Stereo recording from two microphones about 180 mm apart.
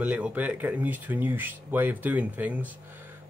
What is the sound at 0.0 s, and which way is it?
Speech, 10° right (ahead or behind).